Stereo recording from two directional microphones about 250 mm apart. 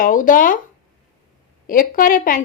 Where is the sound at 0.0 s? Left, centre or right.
Left.